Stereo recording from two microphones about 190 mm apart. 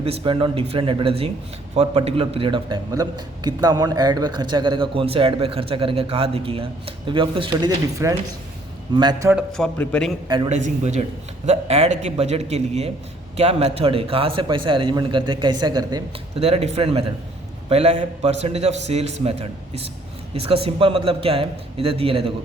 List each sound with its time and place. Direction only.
0.0 s a man's voice: 30° right (ahead or behind)
9.3 s a man's voice: 5° left (ahead or behind)
10.2 s a man's voice: 25° right (ahead or behind)
10.6 s a man's voice: 40° right (ahead or behind)